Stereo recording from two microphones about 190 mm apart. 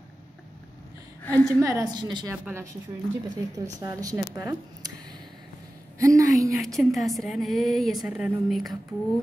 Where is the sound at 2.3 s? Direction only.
10° right (ahead or behind).